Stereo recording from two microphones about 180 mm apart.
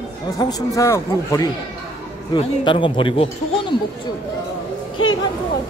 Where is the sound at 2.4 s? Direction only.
25° left (ahead or behind).